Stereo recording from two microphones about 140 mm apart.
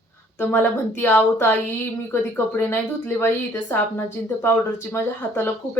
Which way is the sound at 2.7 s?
15° left (ahead or behind).